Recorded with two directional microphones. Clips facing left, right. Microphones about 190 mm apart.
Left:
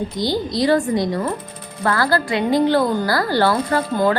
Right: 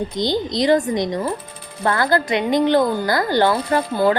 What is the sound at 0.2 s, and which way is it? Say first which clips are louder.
A woman's voice: even; 20° right (ahead or behind).